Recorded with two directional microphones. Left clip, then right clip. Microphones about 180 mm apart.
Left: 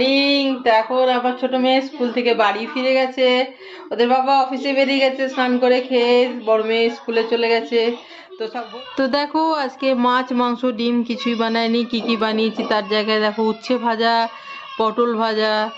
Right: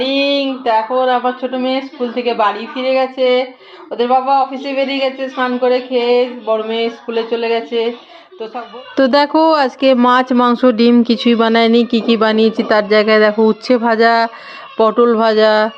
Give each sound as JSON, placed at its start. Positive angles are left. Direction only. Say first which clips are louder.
{"t": 0.0, "sound": "speech", "louder": "right 2 dB", "side_deg": 0}
{"t": 9.0, "sound": "speech", "louder": "right 8 dB", "side_deg": -30}